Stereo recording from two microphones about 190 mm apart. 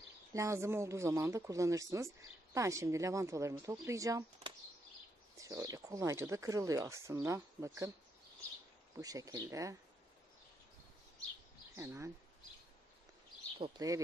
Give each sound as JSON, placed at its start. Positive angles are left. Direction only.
{"t": 0.3, "sound": "speech", "side_deg": -15}
{"t": 5.4, "sound": "speech", "side_deg": -15}
{"t": 8.9, "sound": "speech", "side_deg": -20}
{"t": 11.7, "sound": "speech", "side_deg": -15}
{"t": 13.6, "sound": "speech", "side_deg": -20}